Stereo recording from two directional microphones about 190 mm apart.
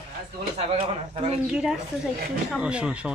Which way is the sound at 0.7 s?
30° right (ahead or behind).